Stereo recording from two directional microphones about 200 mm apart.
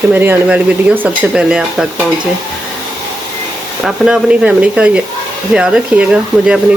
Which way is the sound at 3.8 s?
5° right (ahead or behind).